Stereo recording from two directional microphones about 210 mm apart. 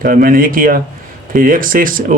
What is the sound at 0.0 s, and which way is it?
Speech, 40° right (ahead or behind).